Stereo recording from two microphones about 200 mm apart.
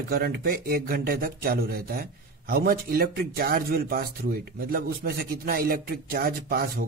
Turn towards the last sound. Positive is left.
turn(degrees=-45)  # may be behind; listen again after turning